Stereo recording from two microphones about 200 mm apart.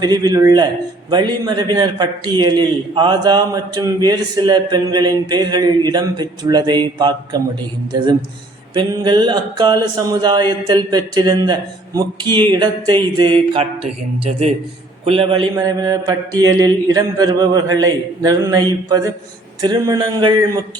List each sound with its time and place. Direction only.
0.0 s a man's voice: 20° right (ahead or behind)
8.8 s a man's voice: 20° right (ahead or behind)